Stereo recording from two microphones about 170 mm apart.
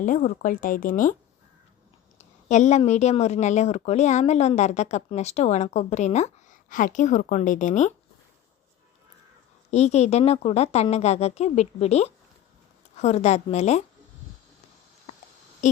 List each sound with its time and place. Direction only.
0.0 s a woman's voice: 50° left (ahead or behind)
2.1 s a woman's voice: 45° left (ahead or behind)
9.7 s speech: 40° left (ahead or behind)
15.6 s a sound: 45° left (ahead or behind)